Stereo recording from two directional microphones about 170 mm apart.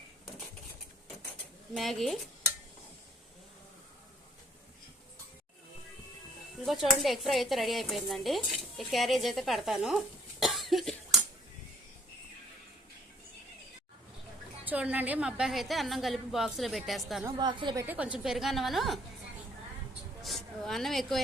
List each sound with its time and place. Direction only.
1.7 s speech: centre (ahead or behind)
6.7 s speech: centre (ahead or behind)
10.4 s cough: centre (ahead or behind)
14.6 s speech: 10° right (ahead or behind)
17.3 s a woman's voice: 25° right (ahead or behind)
17.8 s a woman's voice: 5° right (ahead or behind)
20.2 s a sound: centre (ahead or behind)